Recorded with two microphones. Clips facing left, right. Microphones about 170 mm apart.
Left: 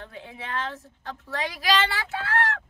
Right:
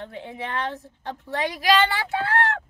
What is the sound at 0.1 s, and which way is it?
A child's voice, 35° right (ahead or behind).